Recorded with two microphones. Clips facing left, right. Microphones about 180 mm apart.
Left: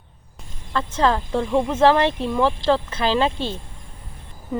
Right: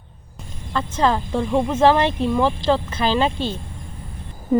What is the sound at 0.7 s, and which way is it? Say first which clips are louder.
Speech: even; 10° right (ahead or behind).